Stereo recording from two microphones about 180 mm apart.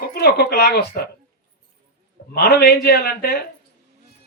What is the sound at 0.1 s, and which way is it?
Speech, 60° left (ahead or behind).